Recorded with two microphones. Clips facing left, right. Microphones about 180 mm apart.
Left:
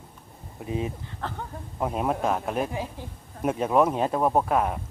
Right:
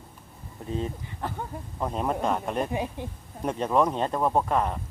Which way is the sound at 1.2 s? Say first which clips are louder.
Right 1 dB; 15° right (ahead or behind).